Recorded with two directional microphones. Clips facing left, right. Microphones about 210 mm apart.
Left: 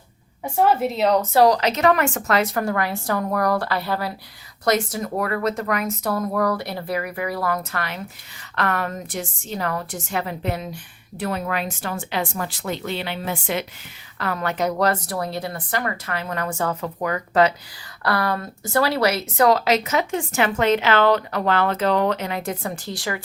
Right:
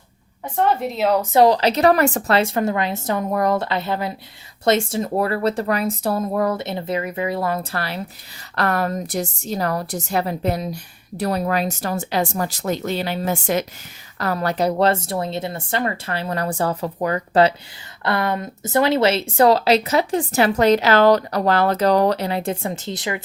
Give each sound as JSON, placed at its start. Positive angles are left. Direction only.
{"t": 0.4, "sound": "a woman's voice", "side_deg": 5}
{"t": 1.2, "sound": "speech", "side_deg": -20}